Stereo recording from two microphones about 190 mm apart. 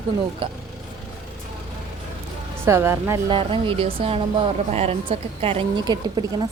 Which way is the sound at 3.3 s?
30° right (ahead or behind).